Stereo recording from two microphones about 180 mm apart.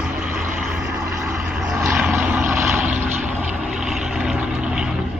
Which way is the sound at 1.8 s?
15° right (ahead or behind).